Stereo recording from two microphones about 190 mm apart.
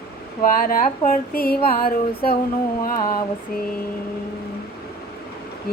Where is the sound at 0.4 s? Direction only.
50° left (ahead or behind).